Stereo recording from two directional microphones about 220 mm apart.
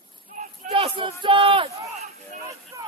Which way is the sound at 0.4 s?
30° right (ahead or behind).